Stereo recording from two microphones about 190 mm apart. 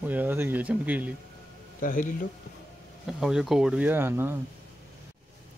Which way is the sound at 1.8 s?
45° left (ahead or behind).